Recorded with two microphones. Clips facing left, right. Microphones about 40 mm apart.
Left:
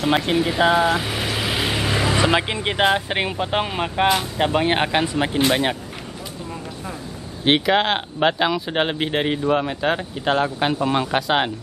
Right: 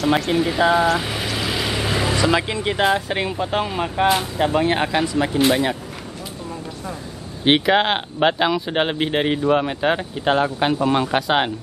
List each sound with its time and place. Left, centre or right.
0.0 s speech: centre
0.9 s vehicle: centre
2.1 s speech: left
7.4 s speech: centre